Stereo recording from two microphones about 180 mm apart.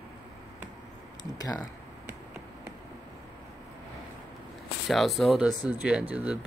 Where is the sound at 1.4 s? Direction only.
20° left (ahead or behind).